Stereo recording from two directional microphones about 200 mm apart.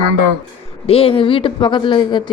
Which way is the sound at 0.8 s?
30° left (ahead or behind).